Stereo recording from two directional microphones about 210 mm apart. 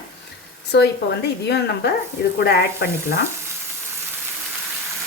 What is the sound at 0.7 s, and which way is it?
Speech, 50° left (ahead or behind).